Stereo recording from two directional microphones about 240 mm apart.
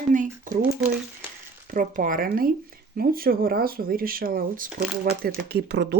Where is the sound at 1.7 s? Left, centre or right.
Right.